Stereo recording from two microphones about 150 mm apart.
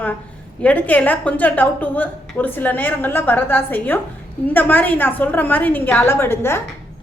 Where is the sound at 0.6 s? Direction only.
10° left (ahead or behind).